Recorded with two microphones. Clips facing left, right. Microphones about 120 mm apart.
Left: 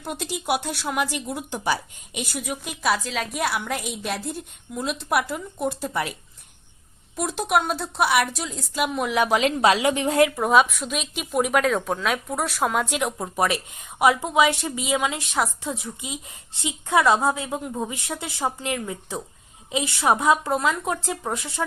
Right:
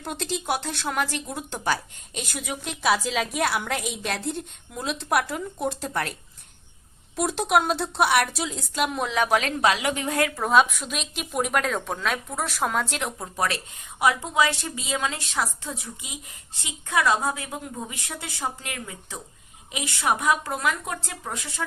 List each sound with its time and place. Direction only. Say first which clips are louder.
0.0 s speech: even; 10° left (ahead or behind)
7.2 s speech: right 1 dB; centre (ahead or behind)
9.6 s a woman's voice: left 5 dB; 25° left (ahead or behind)
10.3 s speech: left 1 dB; 5° left (ahead or behind)
13.1 s a woman's voice: left 4 dB; 20° left (ahead or behind)